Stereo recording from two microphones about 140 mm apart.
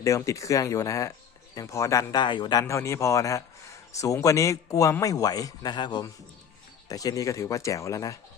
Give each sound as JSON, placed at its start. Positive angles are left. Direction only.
{"t": 0.0, "sound": "a man's voice", "side_deg": 20}
{"t": 2.2, "sound": "a man's voice", "side_deg": 35}